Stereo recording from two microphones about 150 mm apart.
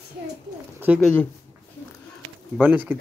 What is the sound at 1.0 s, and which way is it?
Speech, 5° left (ahead or behind).